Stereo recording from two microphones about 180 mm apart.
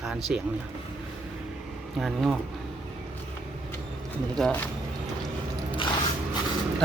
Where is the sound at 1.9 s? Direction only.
Centre (ahead or behind).